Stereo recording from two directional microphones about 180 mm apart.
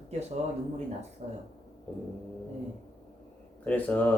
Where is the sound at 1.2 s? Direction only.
40° right (ahead or behind).